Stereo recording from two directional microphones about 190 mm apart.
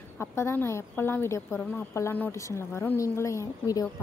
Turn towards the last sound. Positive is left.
turn(degrees=15)  # may be behind; listen again after turning